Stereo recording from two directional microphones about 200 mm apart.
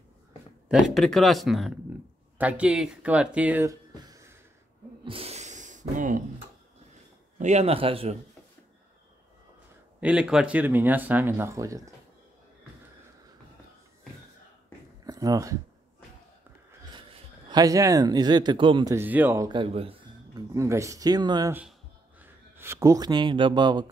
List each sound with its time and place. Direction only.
0.7 s speech: centre (ahead or behind)
3.9 s a sound: 20° right (ahead or behind)
5.0 s a sound: 30° right (ahead or behind)
7.3 s speech: 35° right (ahead or behind)
9.9 s speech: 5° right (ahead or behind)
15.0 s a sound: 20° right (ahead or behind)
16.9 s speech: 25° right (ahead or behind)
18.9 s speech: 10° right (ahead or behind); by 20.4 s 30° right (ahead or behind)
20.5 s speech: 15° right (ahead or behind)